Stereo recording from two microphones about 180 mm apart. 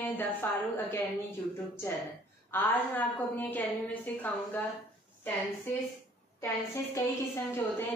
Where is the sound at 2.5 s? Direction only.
10° left (ahead or behind).